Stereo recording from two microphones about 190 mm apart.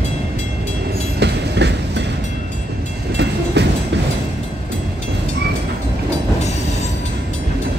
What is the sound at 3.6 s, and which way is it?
Train, 65° right (ahead or behind).